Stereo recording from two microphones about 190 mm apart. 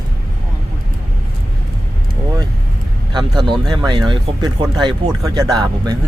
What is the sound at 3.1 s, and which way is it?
Speech, 25° right (ahead or behind).